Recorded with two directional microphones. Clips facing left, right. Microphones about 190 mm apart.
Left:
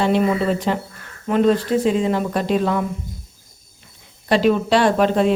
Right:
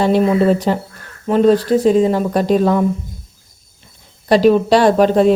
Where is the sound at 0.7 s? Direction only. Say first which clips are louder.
Right 4 dB; 40° right (ahead or behind).